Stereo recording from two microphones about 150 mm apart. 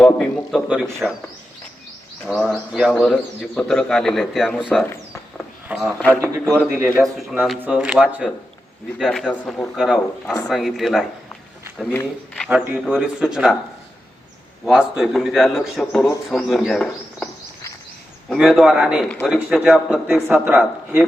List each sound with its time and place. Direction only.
0.0 s speech: 5° left (ahead or behind)
0.9 s a man's voice: 15° right (ahead or behind)
2.2 s a man's voice: centre (ahead or behind)
6.0 s a man's voice: 10° left (ahead or behind)
6.7 s a man's voice: 15° right (ahead or behind); by 9.6 s 10° left (ahead or behind)
9.7 s speech: centre (ahead or behind)
12.5 s speech: 10° right (ahead or behind)
14.6 s speech: 5° right (ahead or behind)
18.3 s a man's voice: 5° right (ahead or behind)